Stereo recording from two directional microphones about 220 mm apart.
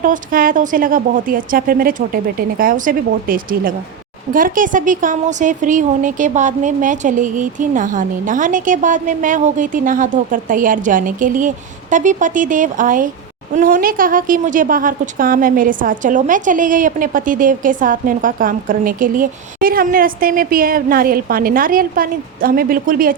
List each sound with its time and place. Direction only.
0.0 s speech: 40° right (ahead or behind)